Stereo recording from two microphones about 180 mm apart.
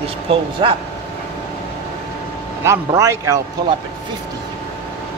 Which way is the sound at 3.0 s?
15° right (ahead or behind).